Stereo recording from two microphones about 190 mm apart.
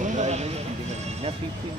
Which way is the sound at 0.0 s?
40° right (ahead or behind).